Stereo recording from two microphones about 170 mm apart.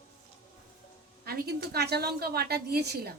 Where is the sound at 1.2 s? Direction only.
65° right (ahead or behind).